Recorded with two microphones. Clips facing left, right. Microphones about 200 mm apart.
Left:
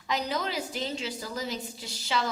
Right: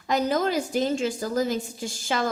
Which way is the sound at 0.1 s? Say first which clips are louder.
Right 7 dB; 50° right (ahead or behind).